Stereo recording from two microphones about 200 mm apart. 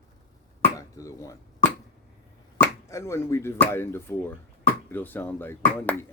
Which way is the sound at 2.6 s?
15° left (ahead or behind).